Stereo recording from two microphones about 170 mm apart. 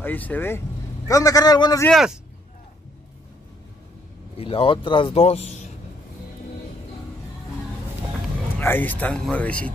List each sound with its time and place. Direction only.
0.0 s a man's voice: 10° left (ahead or behind)
1.9 s speech: centre (ahead or behind)
4.4 s speech: 30° left (ahead or behind)
8.5 s speech: 10° left (ahead or behind)